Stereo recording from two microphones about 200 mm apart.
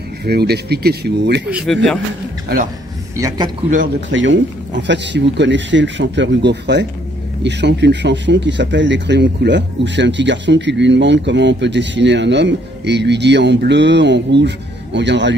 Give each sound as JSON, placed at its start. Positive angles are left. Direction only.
{"t": 0.2, "sound": "speech", "side_deg": -55}
{"t": 1.5, "sound": "speech", "side_deg": -5}
{"t": 3.2, "sound": "speech", "side_deg": -15}
{"t": 4.1, "sound": "speech", "side_deg": -70}